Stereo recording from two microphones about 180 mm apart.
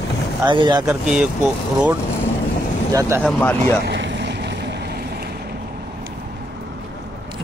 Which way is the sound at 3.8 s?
75° right (ahead or behind).